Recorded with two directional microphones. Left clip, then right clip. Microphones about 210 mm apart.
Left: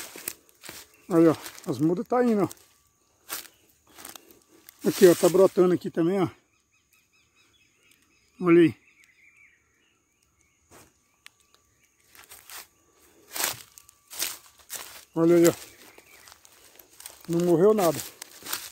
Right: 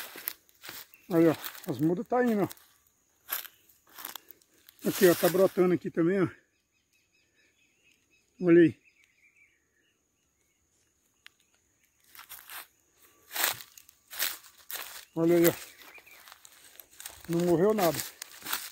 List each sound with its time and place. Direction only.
0.0 s a sound: centre (ahead or behind)
1.1 s speech: 15° left (ahead or behind)
4.8 s speech: centre (ahead or behind)
8.4 s speech: 15° left (ahead or behind)
11.3 s a sound: 10° left (ahead or behind)
13.3 s walk: 10° right (ahead or behind)
15.1 s speech: 20° left (ahead or behind)
16.3 s walk: 5° right (ahead or behind)
17.0 s crumpling: 10° right (ahead or behind)
17.7 s speech: centre (ahead or behind)